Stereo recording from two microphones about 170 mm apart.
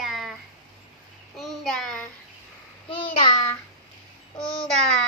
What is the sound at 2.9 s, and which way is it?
Child singing, 30° left (ahead or behind).